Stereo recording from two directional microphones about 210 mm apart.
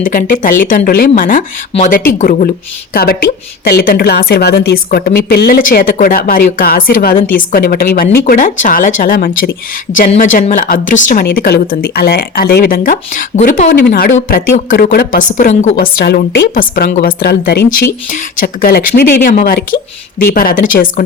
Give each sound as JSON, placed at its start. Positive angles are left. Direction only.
{"t": 0.0, "sound": "a woman's voice", "side_deg": 40}
{"t": 15.4, "sound": "speech", "side_deg": 35}
{"t": 15.7, "sound": "a woman's voice", "side_deg": 50}